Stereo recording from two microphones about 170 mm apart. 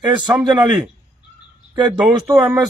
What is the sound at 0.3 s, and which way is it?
Speech, centre (ahead or behind).